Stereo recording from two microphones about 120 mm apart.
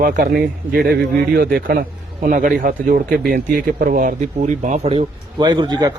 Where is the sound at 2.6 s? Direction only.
90° right.